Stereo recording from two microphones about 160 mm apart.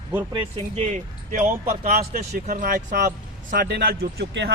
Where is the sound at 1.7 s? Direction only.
70° right (ahead or behind).